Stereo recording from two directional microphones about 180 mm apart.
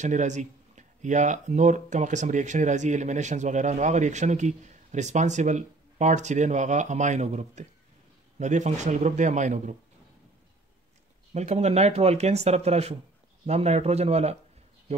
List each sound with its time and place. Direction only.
0.0 s speech: 40° right (ahead or behind)
11.3 s speech: 40° right (ahead or behind)